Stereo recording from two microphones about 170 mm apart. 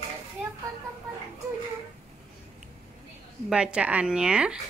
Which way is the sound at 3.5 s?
5° right (ahead or behind).